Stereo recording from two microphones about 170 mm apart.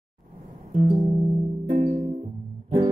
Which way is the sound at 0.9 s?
35° right (ahead or behind).